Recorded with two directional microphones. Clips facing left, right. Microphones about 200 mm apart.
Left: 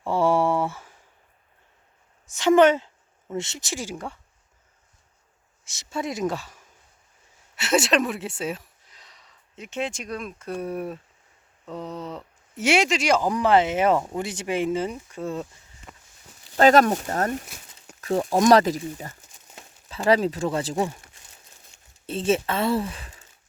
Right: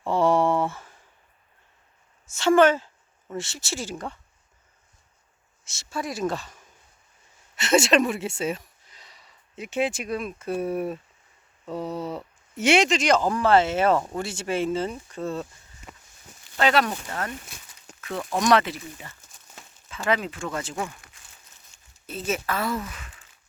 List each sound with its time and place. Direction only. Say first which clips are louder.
0.0 s a sound: even; 10° left (ahead or behind)
2.3 s speech: left 1 dB; 15° left (ahead or behind)
5.6 s speech: left 2 dB; 15° left (ahead or behind); by 12.6 s 10° right (ahead or behind)
12.6 s speech: right 1 dB; 5° left (ahead or behind)
15.9 s a sound: right 1 dB; centre (ahead or behind)
16.4 s speech: left 6 dB; 40° left (ahead or behind)